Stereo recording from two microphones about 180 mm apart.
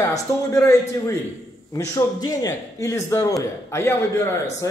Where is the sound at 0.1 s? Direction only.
15° left (ahead or behind).